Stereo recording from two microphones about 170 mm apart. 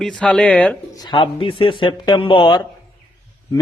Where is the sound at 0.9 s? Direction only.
25° left (ahead or behind).